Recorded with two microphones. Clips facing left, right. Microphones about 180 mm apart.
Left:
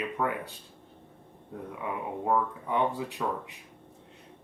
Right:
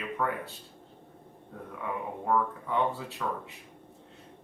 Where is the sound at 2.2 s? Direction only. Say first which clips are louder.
Even; 15° left (ahead or behind).